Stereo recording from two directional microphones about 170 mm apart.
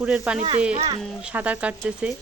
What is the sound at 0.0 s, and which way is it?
Speech, 5° right (ahead or behind).